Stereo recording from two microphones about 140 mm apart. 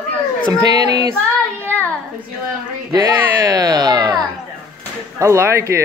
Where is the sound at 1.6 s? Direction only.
10° left (ahead or behind).